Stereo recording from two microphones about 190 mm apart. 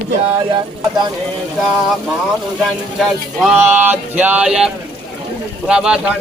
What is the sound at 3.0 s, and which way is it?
Speech, centre (ahead or behind).